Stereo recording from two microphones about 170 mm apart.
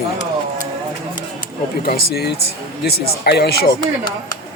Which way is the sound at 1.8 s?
65° left (ahead or behind).